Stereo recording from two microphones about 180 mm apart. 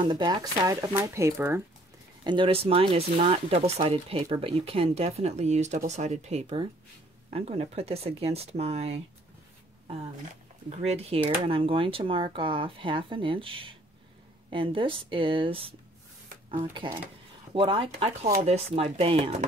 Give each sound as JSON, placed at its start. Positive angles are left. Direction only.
{"t": 0.0, "sound": "speech", "side_deg": -25}
{"t": 2.2, "sound": "speech", "side_deg": -25}
{"t": 10.7, "sound": "speech", "side_deg": -35}